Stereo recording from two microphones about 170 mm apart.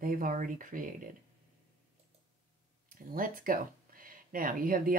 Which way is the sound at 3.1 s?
55° right (ahead or behind).